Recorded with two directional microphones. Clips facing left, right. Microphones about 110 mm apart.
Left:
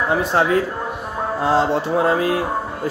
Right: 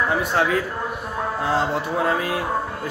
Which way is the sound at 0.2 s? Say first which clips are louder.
Left 4 dB; 30° left (ahead or behind).